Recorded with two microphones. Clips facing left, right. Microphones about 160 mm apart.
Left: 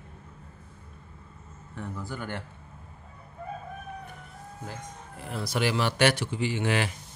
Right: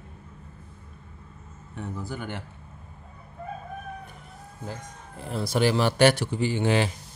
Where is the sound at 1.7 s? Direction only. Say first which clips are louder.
Right 2 dB; 20° right (ahead or behind).